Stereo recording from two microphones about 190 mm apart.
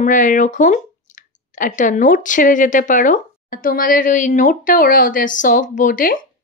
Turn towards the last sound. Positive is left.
turn(degrees=45)  # may be behind; listen again after turning